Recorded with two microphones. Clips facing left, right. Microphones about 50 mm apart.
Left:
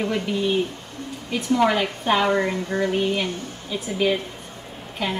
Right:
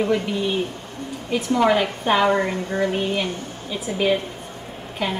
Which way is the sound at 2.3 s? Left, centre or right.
Right.